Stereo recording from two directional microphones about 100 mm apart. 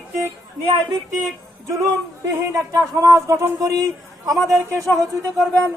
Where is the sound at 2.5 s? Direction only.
35° right (ahead or behind).